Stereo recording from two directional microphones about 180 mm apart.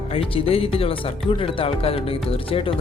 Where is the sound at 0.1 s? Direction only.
30° left (ahead or behind).